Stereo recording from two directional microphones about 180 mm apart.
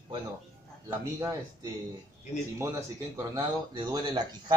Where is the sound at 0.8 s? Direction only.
15° right (ahead or behind).